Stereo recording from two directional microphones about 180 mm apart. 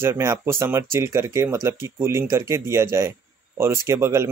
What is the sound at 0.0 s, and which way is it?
Speech, 15° right (ahead or behind).